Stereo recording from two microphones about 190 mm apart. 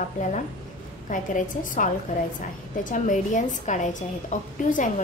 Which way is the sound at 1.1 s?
45° left (ahead or behind).